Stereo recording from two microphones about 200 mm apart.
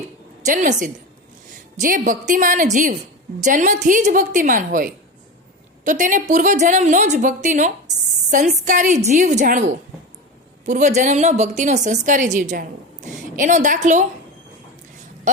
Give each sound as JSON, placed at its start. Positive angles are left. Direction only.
{"t": 0.4, "sound": "a woman's voice", "side_deg": -40}